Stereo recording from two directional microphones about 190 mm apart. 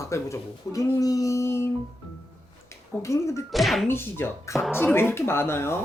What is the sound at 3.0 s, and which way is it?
Speech, 15° left (ahead or behind).